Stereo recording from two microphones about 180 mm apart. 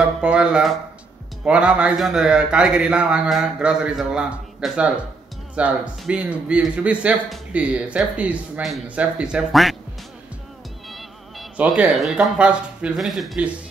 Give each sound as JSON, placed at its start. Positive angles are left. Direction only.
{"t": 0.0, "sound": "a man's voice", "side_deg": -5}
{"t": 10.9, "sound": "speech", "side_deg": 0}